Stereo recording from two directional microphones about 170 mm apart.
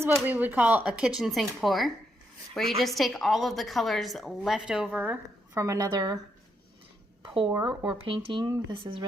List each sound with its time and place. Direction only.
0.0 s a woman's voice: 10° right (ahead or behind)
7.4 s speech: 5° right (ahead or behind)
8.0 s speech: 30° right (ahead or behind)